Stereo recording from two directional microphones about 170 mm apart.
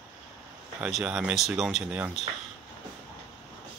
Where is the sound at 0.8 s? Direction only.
5° right (ahead or behind).